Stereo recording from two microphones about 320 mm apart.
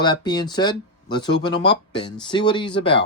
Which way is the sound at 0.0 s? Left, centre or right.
Centre.